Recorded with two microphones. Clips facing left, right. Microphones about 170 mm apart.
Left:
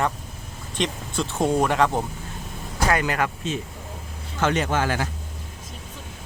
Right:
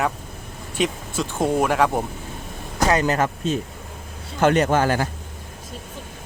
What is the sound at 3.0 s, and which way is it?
Speech, 35° right (ahead or behind).